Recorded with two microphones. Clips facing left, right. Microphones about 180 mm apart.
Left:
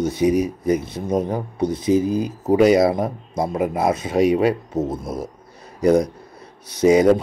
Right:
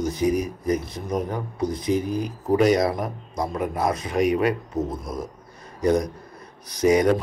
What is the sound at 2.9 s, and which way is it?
Speech, 25° left (ahead or behind).